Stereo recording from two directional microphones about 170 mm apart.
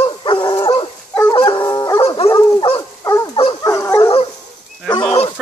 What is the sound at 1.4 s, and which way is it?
Howl, 30° left (ahead or behind).